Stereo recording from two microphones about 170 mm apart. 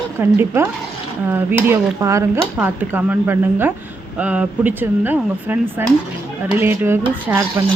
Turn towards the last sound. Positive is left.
turn(degrees=-10)  # may be behind; listen again after turning